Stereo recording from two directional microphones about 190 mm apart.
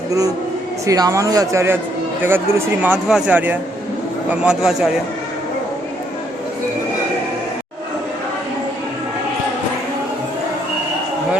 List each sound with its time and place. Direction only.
0.1 s a man's voice: 20° right (ahead or behind)